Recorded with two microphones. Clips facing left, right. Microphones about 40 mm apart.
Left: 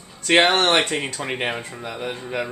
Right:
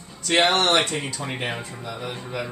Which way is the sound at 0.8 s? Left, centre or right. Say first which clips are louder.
Left 3 dB; left.